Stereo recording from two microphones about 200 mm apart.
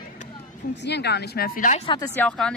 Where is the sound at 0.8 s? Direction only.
55° left (ahead or behind).